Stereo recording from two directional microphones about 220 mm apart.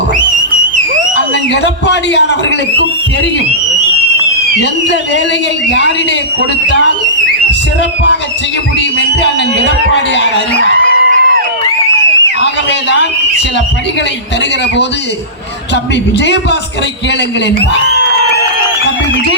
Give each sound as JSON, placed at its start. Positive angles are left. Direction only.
{"t": 0.3, "sound": "theremin", "side_deg": -35}
{"t": 1.6, "sound": "a man's voice", "side_deg": 50}
{"t": 4.6, "sound": "speech", "side_deg": 50}
{"t": 8.8, "sound": "speech", "side_deg": 55}
{"t": 10.8, "sound": "a sound", "side_deg": -40}
{"t": 15.7, "sound": "speech", "side_deg": 50}